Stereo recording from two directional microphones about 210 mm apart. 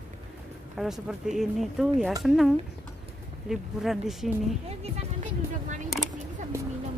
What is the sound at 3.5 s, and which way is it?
Speech, centre (ahead or behind).